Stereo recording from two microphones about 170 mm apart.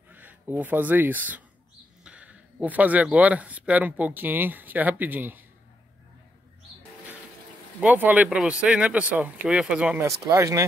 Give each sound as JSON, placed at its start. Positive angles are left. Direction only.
{"t": 0.1, "sound": "speech", "side_deg": -10}
{"t": 7.8, "sound": "speech", "side_deg": -10}
{"t": 10.0, "sound": "speech", "side_deg": -15}